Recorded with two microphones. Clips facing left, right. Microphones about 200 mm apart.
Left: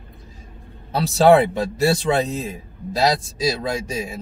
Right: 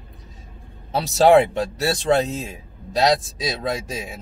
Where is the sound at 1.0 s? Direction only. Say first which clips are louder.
Even; centre (ahead or behind).